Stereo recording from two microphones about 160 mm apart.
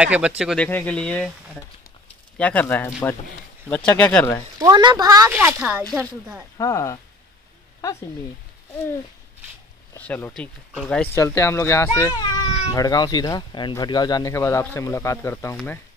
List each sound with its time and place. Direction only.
0.0 s speech: 5° right (ahead or behind)
0.7 s speech: 10° left (ahead or behind)
2.3 s speech: 10° left (ahead or behind)
4.6 s speech: 25° right (ahead or behind)
5.3 s speech: 10° right (ahead or behind)
6.6 s speech: 20° left (ahead or behind)
9.9 s speech: 10° left (ahead or behind)
11.1 s speech: 20° left (ahead or behind)